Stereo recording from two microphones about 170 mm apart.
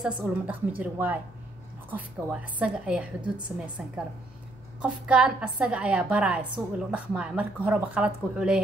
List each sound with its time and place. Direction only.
0.0 s a woman's voice: 10° right (ahead or behind)
2.6 s a woman's voice: 5° right (ahead or behind)
3.2 s a woman's voice: 25° right (ahead or behind)
3.5 s a woman's voice: 10° right (ahead or behind)